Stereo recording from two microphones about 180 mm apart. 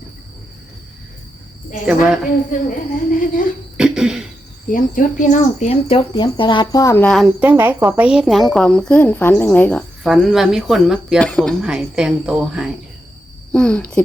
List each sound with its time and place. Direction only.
2.5 s speech: 45° left (ahead or behind)
3.8 s cough: 5° right (ahead or behind)
4.7 s speech: 45° left (ahead or behind); by 12.7 s 5° right (ahead or behind)
13.5 s speech: 5° left (ahead or behind)